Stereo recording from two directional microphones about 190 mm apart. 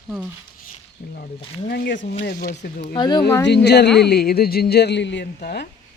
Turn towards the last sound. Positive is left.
turn(degrees=60)  # may be behind; listen again after turning